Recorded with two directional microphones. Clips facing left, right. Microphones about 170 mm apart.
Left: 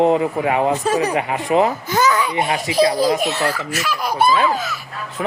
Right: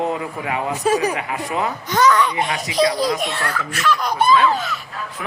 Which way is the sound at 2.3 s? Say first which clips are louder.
Left 3 dB; 30° left (ahead or behind).